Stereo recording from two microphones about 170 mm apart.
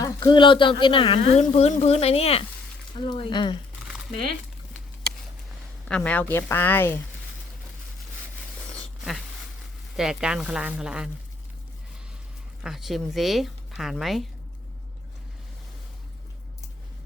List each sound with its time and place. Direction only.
0.0 s speech: 25° left (ahead or behind)
5.9 s speech: 10° left (ahead or behind)
10.0 s a woman's voice: 5° right (ahead or behind)
12.6 s a woman's voice: centre (ahead or behind)